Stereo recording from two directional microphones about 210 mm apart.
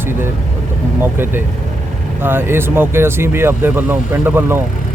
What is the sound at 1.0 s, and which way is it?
Speech, 10° right (ahead or behind).